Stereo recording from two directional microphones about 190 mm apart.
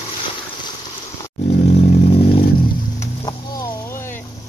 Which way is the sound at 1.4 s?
60° left (ahead or behind).